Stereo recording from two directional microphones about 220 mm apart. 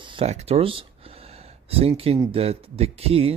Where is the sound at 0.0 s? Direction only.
25° right (ahead or behind).